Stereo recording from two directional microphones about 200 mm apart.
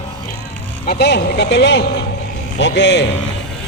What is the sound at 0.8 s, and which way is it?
Speech, 60° left (ahead or behind).